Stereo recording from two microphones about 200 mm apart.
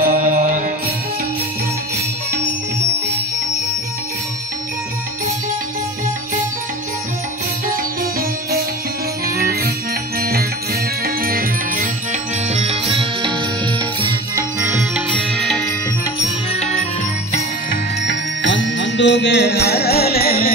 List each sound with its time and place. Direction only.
0.0 s mantra: 40° right (ahead or behind)
7.7 s music: 45° right (ahead or behind); by 15.0 s 10° right (ahead or behind)
15.1 s music: 5° left (ahead or behind)
18.0 s music: 65° left (ahead or behind); by 20.5 s 50° left (ahead or behind)